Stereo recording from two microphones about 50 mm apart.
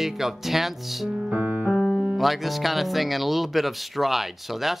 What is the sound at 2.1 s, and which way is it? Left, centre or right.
Speech, centre.